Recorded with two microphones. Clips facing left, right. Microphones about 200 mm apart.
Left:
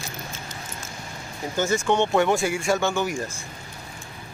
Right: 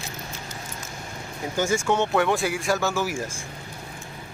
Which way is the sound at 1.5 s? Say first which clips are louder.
Left 1 dB; 10° right (ahead or behind).